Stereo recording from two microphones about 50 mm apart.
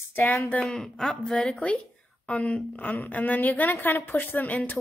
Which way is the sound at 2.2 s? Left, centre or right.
Left.